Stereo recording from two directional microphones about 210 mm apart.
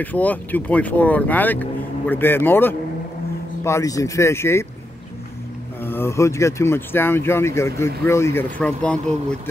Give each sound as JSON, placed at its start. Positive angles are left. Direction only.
{"t": 0.0, "sound": "speech", "side_deg": 10}
{"t": 5.8, "sound": "speech", "side_deg": 10}